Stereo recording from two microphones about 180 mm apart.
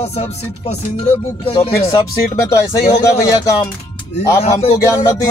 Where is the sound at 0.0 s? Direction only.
40° left (ahead or behind).